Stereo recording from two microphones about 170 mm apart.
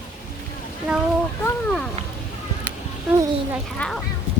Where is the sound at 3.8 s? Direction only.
5° left (ahead or behind).